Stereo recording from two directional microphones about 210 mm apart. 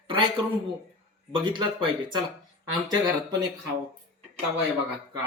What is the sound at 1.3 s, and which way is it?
Speech, 25° right (ahead or behind).